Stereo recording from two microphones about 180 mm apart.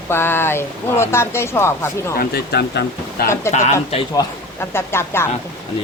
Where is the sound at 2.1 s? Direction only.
60° left (ahead or behind).